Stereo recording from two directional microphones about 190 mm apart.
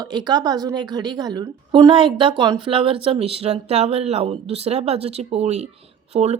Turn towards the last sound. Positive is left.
turn(degrees=-30)  # may be behind; listen again after turning